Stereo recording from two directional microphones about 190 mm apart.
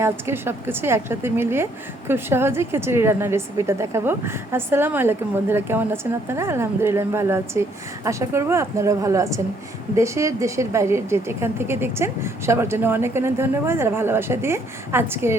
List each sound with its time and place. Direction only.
0.0 s a woman's voice: 10° right (ahead or behind)